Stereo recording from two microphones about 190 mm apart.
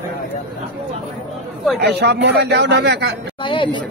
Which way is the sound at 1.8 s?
60° right (ahead or behind).